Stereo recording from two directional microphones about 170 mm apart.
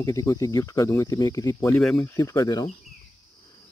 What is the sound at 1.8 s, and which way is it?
Speech, 5° left (ahead or behind).